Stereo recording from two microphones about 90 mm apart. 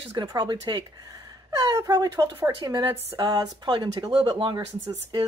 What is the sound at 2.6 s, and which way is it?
Speech, 55° right (ahead or behind).